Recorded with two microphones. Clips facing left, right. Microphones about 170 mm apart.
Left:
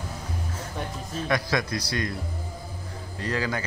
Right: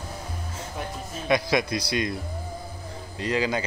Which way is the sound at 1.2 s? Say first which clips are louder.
Right 4 dB; 15° right (ahead or behind).